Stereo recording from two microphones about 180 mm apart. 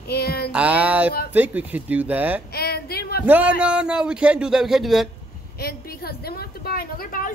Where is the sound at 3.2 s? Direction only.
10° right (ahead or behind).